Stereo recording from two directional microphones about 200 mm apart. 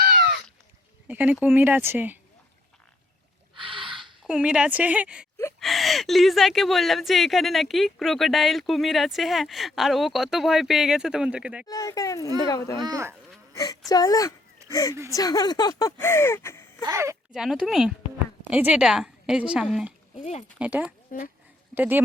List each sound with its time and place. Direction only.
0.0 s a sound: 50° right (ahead or behind)
1.0 s speech: 10° right (ahead or behind)
3.5 s gasp: 25° right (ahead or behind)
4.0 s speech: 5° right (ahead or behind)
11.7 s speech: 15° left (ahead or behind)
12.8 s speech: 15° right (ahead or behind)
13.5 s speech: 15° left (ahead or behind)
16.8 s speech: 15° right (ahead or behind)
17.3 s speech: centre (ahead or behind)